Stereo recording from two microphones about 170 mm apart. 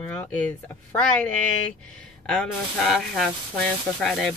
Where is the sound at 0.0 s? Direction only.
10° left (ahead or behind).